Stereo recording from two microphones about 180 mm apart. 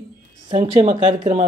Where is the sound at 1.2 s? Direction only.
40° right (ahead or behind).